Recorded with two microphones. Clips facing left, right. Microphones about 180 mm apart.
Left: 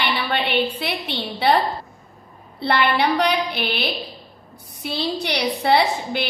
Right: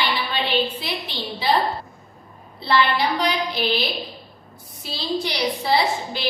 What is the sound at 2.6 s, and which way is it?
A woman's voice, 60° left (ahead or behind).